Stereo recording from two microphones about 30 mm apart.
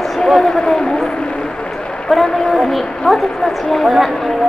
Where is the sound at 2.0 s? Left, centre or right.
Centre.